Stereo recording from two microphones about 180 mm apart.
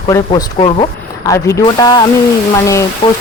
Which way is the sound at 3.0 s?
30° left (ahead or behind).